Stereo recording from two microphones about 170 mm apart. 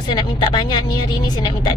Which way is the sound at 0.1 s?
25° left (ahead or behind).